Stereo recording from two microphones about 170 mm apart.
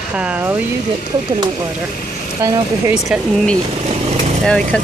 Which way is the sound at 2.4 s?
20° right (ahead or behind).